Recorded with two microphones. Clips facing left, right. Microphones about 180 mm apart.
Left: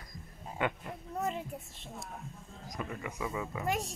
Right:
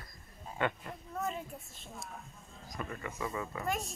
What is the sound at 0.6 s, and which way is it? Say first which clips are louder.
Speech: even; 10° left (ahead or behind).